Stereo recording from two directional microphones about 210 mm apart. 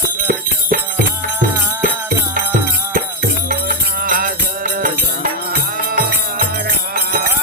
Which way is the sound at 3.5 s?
40° right (ahead or behind).